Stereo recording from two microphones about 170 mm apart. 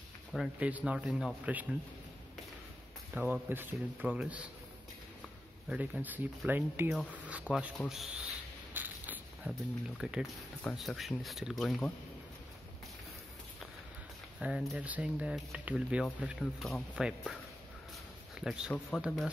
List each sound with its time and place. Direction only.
0.3 s speech: 5° right (ahead or behind)
3.2 s speech: 10° right (ahead or behind)
5.7 s speech: 10° right (ahead or behind)
8.7 s creak: 10° right (ahead or behind)
10.0 s speech: 5° right (ahead or behind)
14.4 s speech: 5° right (ahead or behind)
18.4 s speech: 5° right (ahead or behind)